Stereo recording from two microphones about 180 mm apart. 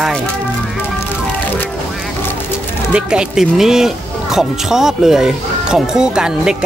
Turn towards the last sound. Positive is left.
turn(degrees=-5)  # may be behind; listen again after turning